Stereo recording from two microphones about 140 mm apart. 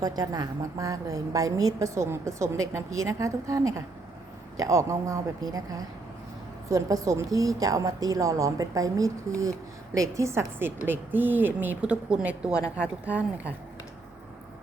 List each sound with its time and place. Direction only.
0.0 s a woman's voice: 25° right (ahead or behind); by 13.5 s 10° right (ahead or behind)